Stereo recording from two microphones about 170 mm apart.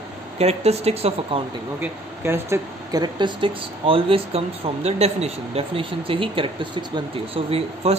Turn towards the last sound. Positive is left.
turn(degrees=-35)  # may be behind; listen again after turning